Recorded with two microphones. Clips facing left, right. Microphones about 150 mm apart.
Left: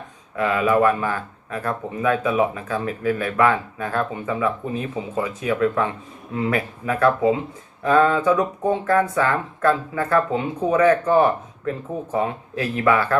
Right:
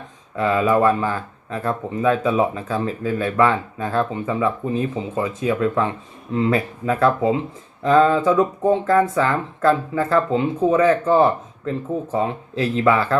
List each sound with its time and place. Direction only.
0.3 s speech: 25° right (ahead or behind)